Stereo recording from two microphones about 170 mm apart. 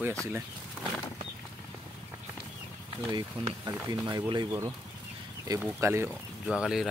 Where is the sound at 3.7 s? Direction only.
25° right (ahead or behind).